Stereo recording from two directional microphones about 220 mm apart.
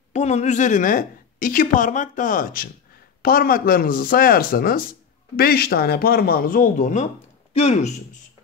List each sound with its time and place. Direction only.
0.1 s speech: 30° left (ahead or behind)